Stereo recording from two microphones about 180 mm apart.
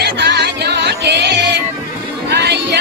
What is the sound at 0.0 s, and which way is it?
Music, 65° right (ahead or behind).